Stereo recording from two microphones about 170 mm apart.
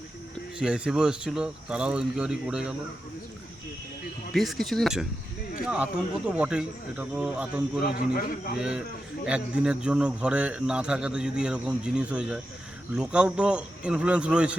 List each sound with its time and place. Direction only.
0.6 s a man's voice: 5° right (ahead or behind)
4.3 s a man's voice: centre (ahead or behind)
7.9 s a man's voice: 60° left (ahead or behind)
8.5 s a man's voice: 5° right (ahead or behind)